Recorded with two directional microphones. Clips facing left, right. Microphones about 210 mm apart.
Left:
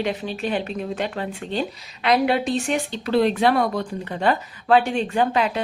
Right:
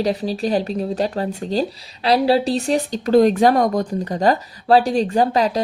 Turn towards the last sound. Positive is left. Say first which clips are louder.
# right 4 dB
turn(degrees=-35)  # may be behind; listen again after turning